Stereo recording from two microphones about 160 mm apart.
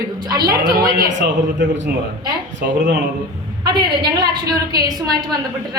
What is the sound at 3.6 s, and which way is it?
A woman's voice, 30° right (ahead or behind).